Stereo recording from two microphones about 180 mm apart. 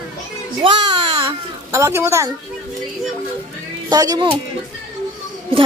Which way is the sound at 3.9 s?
20° right (ahead or behind).